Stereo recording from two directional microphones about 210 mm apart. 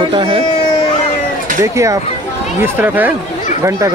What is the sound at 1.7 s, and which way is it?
Speech, 15° right (ahead or behind).